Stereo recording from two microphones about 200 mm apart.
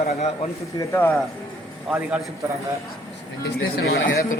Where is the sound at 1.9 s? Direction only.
5° right (ahead or behind).